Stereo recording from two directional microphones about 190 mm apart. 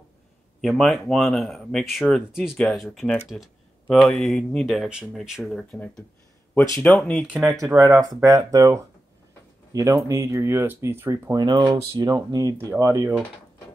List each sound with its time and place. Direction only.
0.6 s speech: centre (ahead or behind)
7.4 s speech: 15° right (ahead or behind)